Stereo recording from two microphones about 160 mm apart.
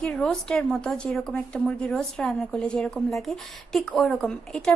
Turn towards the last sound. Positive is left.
turn(degrees=5)  # may be behind; listen again after turning